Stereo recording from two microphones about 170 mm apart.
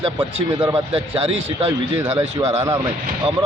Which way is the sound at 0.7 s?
30° right (ahead or behind).